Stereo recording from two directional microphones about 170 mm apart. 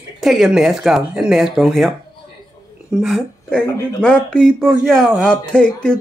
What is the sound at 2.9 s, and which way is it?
Speech, centre (ahead or behind).